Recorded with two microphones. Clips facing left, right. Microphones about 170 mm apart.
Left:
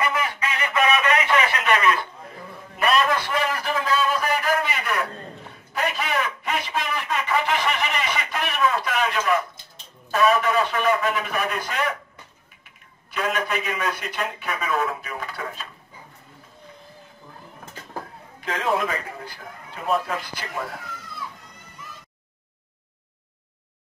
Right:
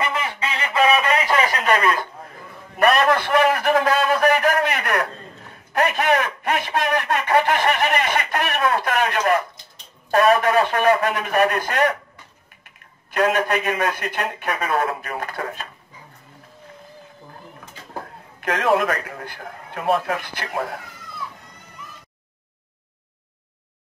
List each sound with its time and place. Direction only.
0.1 s radio: 30° right (ahead or behind)
2.8 s a sound: 55° right (ahead or behind)
10.1 s speech: 55° right (ahead or behind)
11.1 s speech: 45° right (ahead or behind)
13.2 s speech: 65° right (ahead or behind)
18.4 s a man's voice: 75° right (ahead or behind)